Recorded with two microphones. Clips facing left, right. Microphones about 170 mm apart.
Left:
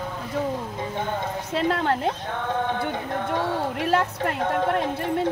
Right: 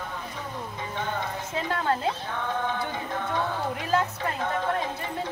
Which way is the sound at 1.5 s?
70° left (ahead or behind).